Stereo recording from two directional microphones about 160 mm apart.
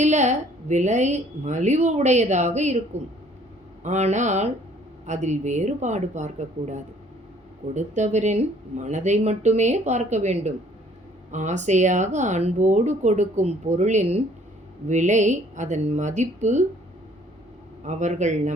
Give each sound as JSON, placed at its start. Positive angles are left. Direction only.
{"t": 0.0, "sound": "speech", "side_deg": -45}
{"t": 3.8, "sound": "speech", "side_deg": -45}
{"t": 17.8, "sound": "speech", "side_deg": -50}